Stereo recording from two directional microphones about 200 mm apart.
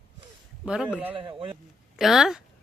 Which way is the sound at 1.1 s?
25° right (ahead or behind).